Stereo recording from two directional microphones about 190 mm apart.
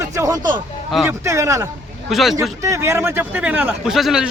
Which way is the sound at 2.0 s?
Centre (ahead or behind).